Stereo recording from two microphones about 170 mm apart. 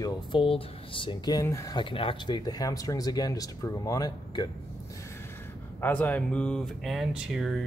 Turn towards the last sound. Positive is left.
turn(degrees=-5)  # may be behind; listen again after turning